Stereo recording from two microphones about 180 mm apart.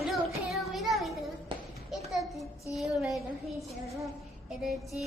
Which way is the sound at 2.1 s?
Centre (ahead or behind).